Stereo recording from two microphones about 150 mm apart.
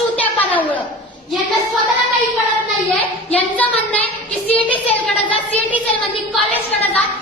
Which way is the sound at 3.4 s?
10° left (ahead or behind).